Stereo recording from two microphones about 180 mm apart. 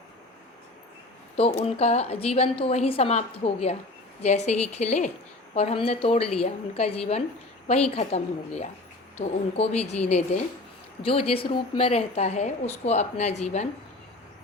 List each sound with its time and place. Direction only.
1.4 s a woman's voice: 35° left (ahead or behind)